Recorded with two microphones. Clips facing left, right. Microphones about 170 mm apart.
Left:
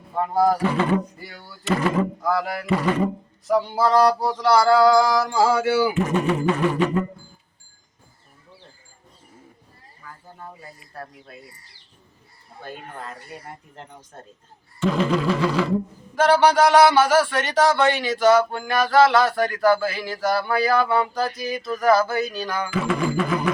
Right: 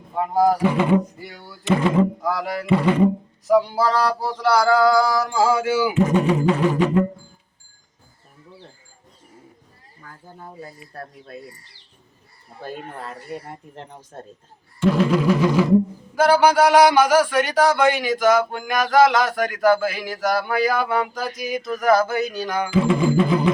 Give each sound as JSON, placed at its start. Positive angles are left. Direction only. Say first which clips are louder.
{"t": 0.1, "sound": "a man's voice", "louder": "right 1 dB", "side_deg": -10}
{"t": 4.4, "sound": "a man's voice", "louder": "even", "side_deg": -10}
{"t": 14.8, "sound": "a man's voice", "louder": "right 3 dB", "side_deg": -10}